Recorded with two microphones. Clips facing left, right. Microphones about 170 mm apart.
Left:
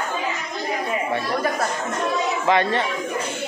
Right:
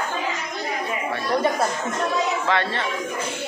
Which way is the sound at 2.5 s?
15° left (ahead or behind).